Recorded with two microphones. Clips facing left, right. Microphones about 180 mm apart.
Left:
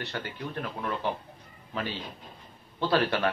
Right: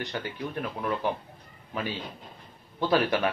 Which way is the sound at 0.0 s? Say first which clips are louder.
Right 2 dB; 15° right (ahead or behind).